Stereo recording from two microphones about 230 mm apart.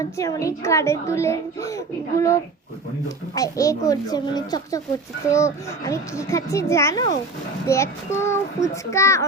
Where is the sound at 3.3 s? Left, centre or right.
Centre.